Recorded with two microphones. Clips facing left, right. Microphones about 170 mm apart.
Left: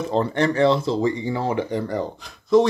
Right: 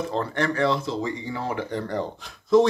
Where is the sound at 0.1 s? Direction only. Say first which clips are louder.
Left 5 dB; 20° left (ahead or behind).